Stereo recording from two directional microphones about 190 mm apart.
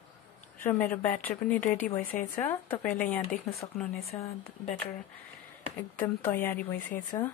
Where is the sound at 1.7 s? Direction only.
40° left (ahead or behind).